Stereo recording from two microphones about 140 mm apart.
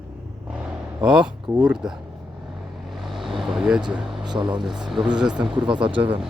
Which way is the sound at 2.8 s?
Centre (ahead or behind).